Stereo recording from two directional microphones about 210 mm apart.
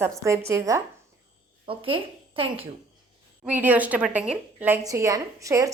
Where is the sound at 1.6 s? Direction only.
25° right (ahead or behind).